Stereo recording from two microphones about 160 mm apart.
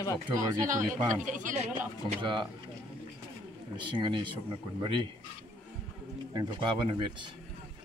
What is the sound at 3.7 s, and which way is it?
Speech, 30° right (ahead or behind).